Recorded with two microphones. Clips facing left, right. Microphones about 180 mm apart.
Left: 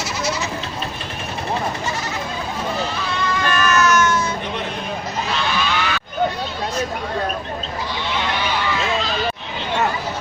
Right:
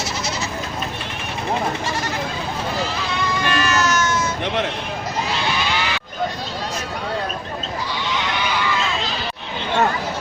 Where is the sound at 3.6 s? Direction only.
30° right (ahead or behind).